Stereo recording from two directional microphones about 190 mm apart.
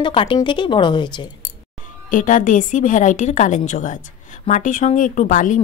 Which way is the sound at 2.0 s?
45° left (ahead or behind).